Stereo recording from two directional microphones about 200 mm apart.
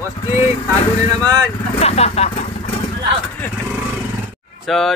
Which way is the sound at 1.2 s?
20° right (ahead or behind).